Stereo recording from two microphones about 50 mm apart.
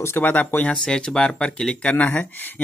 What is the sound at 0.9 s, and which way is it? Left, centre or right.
Speech, centre.